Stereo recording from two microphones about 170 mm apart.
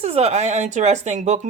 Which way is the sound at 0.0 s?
40° right (ahead or behind).